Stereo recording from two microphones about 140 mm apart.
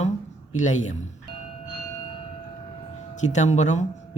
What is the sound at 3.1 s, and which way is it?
Speech, 60° left (ahead or behind).